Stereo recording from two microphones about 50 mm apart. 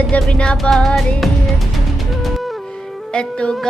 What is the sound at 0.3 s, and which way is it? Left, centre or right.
Music, centre.